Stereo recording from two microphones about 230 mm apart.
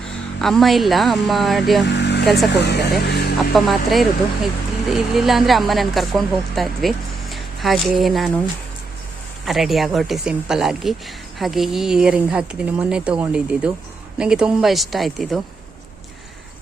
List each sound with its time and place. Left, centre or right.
0.0 s speech: centre
1.9 s vehicle: left
2.2 s speech: centre
2.5 s speech: left
3.5 s speech: centre
9.5 s speech: centre